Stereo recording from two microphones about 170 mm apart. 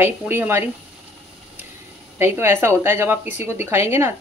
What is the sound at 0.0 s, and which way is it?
Speech, 10° right (ahead or behind).